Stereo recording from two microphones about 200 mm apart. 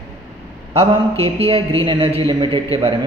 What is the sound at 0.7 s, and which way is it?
A man's voice, 30° right (ahead or behind).